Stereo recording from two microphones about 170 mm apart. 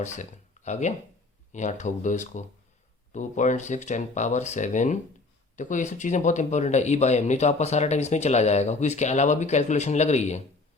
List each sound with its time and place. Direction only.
0.0 s speech: 45° left (ahead or behind)